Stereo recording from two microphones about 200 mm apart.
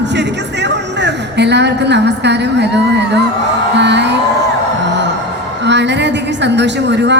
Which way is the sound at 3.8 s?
60° right (ahead or behind).